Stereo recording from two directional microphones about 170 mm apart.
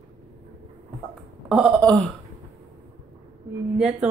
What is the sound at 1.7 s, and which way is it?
Speech, 5° left (ahead or behind).